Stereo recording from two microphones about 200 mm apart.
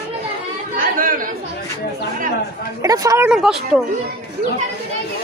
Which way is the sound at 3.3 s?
Centre (ahead or behind).